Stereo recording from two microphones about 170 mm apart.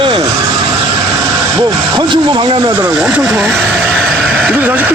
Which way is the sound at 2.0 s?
30° right (ahead or behind).